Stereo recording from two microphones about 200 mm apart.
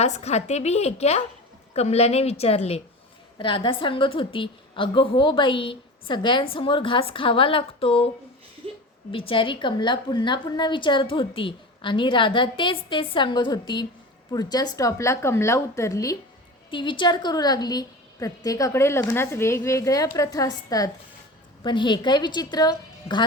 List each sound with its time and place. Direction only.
0.0 s a woman's voice: 35° left (ahead or behind)
9.1 s a woman's voice: 25° left (ahead or behind)